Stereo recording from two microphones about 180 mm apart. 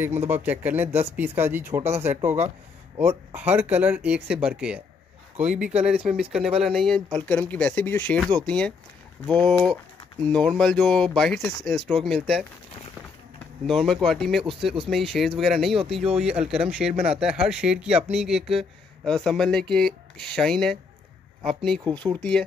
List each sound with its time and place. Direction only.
0.3 s speech: 10° right (ahead or behind)
2.0 s speech: 35° right (ahead or behind)
3.0 s speech: 15° right (ahead or behind); by 12.2 s centre (ahead or behind)
13.7 s speech: centre (ahead or behind)
21.8 s speech: 25° right (ahead or behind)